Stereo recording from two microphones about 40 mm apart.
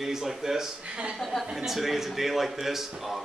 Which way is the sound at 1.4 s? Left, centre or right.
Centre.